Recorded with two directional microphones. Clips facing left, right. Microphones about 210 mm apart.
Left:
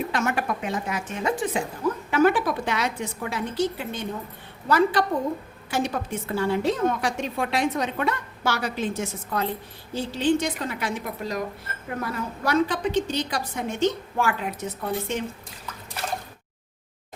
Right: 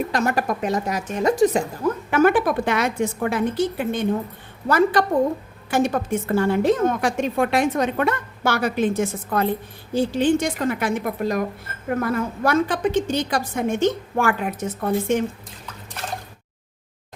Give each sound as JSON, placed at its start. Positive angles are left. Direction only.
{"t": 0.1, "sound": "a woman's voice", "side_deg": -40}
{"t": 2.0, "sound": "a woman's voice", "side_deg": -55}